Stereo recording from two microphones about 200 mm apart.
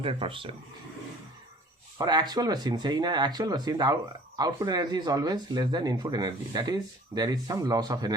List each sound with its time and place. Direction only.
0.0 s speech: 25° right (ahead or behind)
2.0 s speech: 20° right (ahead or behind)